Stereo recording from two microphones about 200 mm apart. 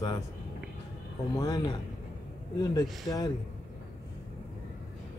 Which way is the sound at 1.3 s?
20° left (ahead or behind).